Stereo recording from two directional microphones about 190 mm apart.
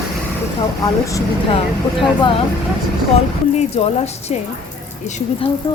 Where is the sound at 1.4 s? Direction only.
30° left (ahead or behind).